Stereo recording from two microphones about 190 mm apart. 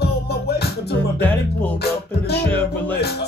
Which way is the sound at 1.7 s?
60° left (ahead or behind).